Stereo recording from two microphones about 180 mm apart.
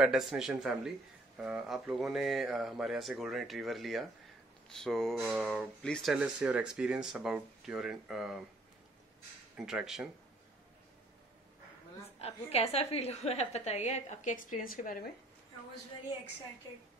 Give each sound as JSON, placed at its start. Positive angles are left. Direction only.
{"t": 0.0, "sound": "speech", "side_deg": 0}
{"t": 9.6, "sound": "speech", "side_deg": -5}
{"t": 12.2, "sound": "a woman's voice", "side_deg": 35}